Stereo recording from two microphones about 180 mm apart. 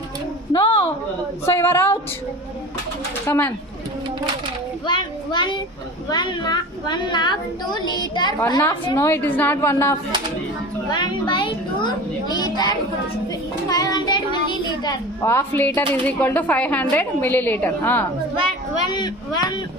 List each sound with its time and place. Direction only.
0.5 s a sound: 30° left (ahead or behind)
1.5 s a sound: 15° left (ahead or behind)
3.2 s a woman's voice: 10° left (ahead or behind)
4.9 s a child's voice: 25° left (ahead or behind)
10.9 s a woman's voice: 25° left (ahead or behind)
18.9 s a woman's voice: 25° left (ahead or behind)